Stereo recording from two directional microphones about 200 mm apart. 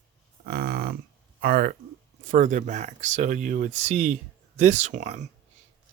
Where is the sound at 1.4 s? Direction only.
50° right (ahead or behind).